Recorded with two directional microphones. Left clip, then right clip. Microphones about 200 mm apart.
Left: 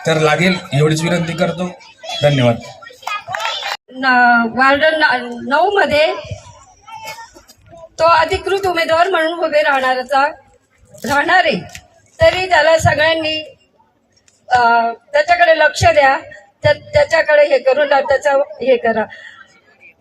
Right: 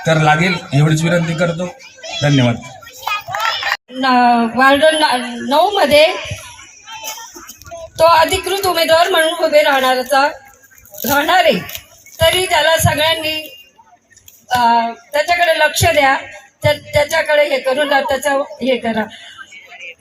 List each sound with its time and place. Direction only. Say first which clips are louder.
0.0 s a man's voice: right 1 dB; 15° left (ahead or behind)
2.2 s a man's voice: left 3 dB; 15° left (ahead or behind)
2.8 s a sound: right 4 dB; 55° right (ahead or behind)
4.0 s speech: left 1 dB; centre (ahead or behind)
7.9 s speech: right 2 dB; centre (ahead or behind)
14.4 s speech: left 1 dB; centre (ahead or behind)